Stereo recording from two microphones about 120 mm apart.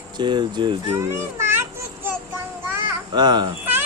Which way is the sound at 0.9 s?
20° right (ahead or behind).